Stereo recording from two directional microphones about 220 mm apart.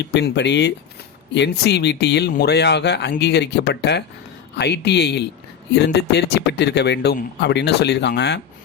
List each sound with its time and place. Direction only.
0.0 s speech: 50° left (ahead or behind)